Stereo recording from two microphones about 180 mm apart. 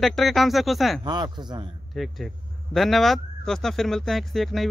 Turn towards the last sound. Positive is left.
turn(degrees=0)  # may be behind; listen again after turning